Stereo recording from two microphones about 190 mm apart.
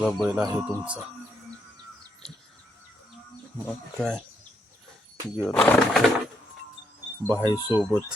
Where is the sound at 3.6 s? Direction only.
5° left (ahead or behind).